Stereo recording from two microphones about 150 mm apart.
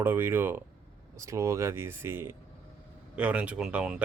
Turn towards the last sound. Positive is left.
turn(degrees=-5)  # may be behind; listen again after turning